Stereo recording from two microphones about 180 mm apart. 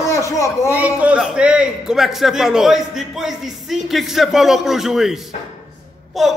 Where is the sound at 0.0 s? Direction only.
15° left (ahead or behind).